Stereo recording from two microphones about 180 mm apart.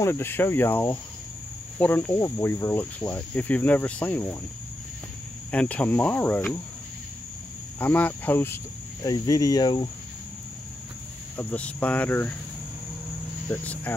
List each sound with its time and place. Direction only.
0.0 s cricket: 15° left (ahead or behind)
5.5 s cricket: 5° left (ahead or behind)
7.8 s cricket: 10° left (ahead or behind)
9.0 s speech: 20° left (ahead or behind)
11.3 s cricket: 10° left (ahead or behind)
13.5 s speech: 10° left (ahead or behind)